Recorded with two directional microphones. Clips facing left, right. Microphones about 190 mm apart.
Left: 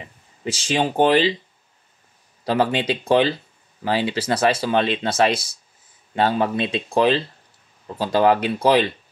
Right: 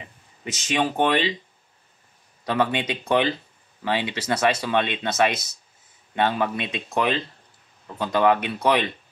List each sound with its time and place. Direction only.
0.4 s speech: 30° left (ahead or behind)
2.4 s speech: 30° left (ahead or behind)